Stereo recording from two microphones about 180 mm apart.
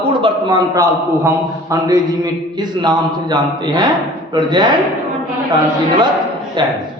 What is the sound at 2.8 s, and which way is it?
Speech, 25° right (ahead or behind).